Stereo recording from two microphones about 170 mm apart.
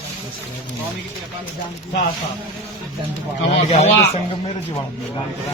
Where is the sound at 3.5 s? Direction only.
35° left (ahead or behind).